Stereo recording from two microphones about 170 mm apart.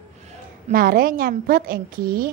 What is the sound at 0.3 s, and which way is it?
A woman's voice, 50° right (ahead or behind).